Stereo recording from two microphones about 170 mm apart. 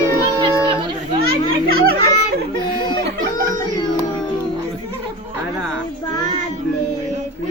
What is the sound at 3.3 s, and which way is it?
Music, 20° left (ahead or behind).